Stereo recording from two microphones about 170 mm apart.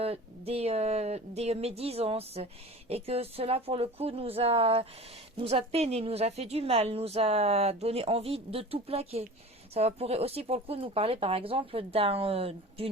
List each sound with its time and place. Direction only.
0.0 s a woman's voice: 35° right (ahead or behind)